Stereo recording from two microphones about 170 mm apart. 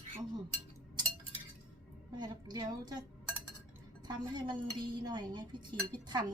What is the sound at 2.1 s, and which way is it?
Speech, 25° right (ahead or behind).